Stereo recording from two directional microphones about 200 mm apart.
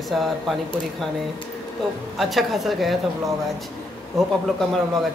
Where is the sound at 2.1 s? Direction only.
Centre (ahead or behind).